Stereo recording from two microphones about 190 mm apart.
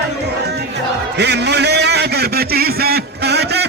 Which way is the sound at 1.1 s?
65° right (ahead or behind).